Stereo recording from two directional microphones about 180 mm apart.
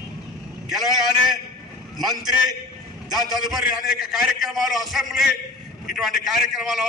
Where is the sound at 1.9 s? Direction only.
Centre (ahead or behind).